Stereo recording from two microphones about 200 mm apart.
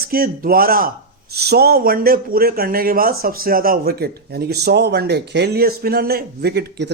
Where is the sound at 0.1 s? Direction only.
50° right (ahead or behind).